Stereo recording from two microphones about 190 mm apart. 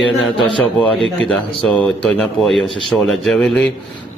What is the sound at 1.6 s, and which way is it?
Speech, 5° left (ahead or behind).